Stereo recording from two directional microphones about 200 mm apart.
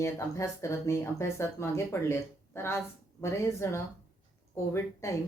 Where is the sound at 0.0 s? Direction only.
15° left (ahead or behind).